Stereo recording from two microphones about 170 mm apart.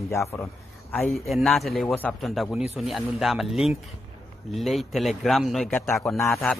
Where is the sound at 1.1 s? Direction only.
Centre (ahead or behind).